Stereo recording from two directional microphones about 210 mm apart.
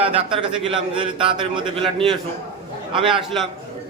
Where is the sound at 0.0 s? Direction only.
25° right (ahead or behind).